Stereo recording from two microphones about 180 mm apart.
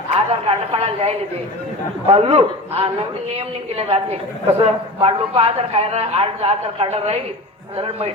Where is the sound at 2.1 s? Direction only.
30° right (ahead or behind).